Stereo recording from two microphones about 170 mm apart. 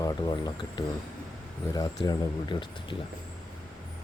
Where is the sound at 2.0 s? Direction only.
30° left (ahead or behind).